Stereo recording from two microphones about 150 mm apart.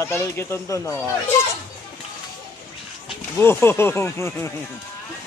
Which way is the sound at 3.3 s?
15° left (ahead or behind).